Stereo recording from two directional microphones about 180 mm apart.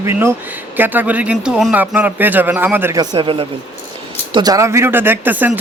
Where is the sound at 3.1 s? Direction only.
30° right (ahead or behind).